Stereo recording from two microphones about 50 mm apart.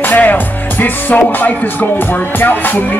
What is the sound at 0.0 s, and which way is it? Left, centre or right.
Speech, left.